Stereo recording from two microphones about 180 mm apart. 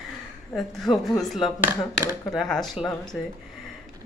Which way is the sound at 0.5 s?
Centre (ahead or behind).